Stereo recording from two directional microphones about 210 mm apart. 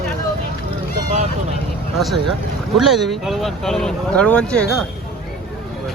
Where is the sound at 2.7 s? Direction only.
Centre (ahead or behind).